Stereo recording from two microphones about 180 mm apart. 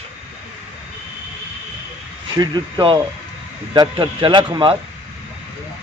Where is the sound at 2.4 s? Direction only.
25° right (ahead or behind).